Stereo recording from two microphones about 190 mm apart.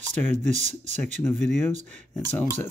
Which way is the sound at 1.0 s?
10° left (ahead or behind).